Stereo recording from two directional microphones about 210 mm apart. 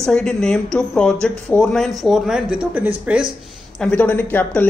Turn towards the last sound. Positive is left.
turn(degrees=10)  # may be behind; listen again after turning